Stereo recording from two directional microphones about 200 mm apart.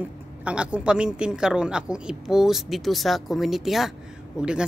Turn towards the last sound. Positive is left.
turn(degrees=-5)  # may be behind; listen again after turning